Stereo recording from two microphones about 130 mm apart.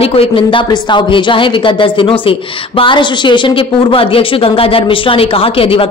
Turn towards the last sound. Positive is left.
turn(degrees=45)  # may be behind; listen again after turning